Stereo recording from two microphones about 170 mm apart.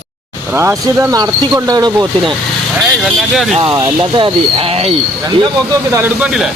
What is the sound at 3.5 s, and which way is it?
Speech, 30° right (ahead or behind).